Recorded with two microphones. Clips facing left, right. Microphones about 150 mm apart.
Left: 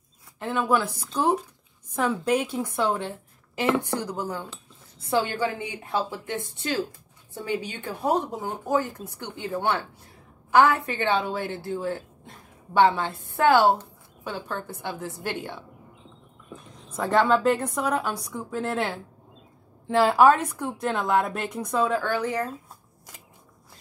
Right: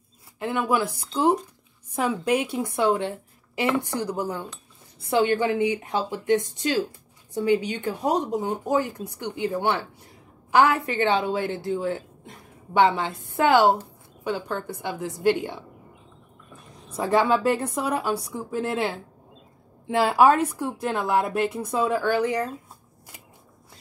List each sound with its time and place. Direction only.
0.4 s speech: 10° right (ahead or behind)
4.0 s speech: 10° right (ahead or behind)
16.9 s speech: 10° right (ahead or behind)